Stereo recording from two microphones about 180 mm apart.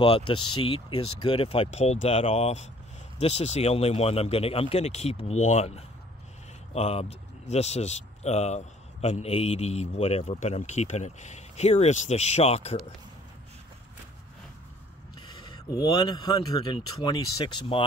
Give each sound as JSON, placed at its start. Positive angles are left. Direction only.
{"t": 0.0, "sound": "speech", "side_deg": 30}
{"t": 15.1, "sound": "speech", "side_deg": 25}